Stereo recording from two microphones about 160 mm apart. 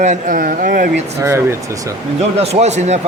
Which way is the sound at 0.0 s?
50° right (ahead or behind).